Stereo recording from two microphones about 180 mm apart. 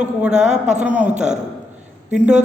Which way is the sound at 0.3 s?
40° right (ahead or behind).